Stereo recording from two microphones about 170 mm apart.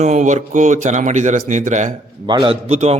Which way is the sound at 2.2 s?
30° right (ahead or behind).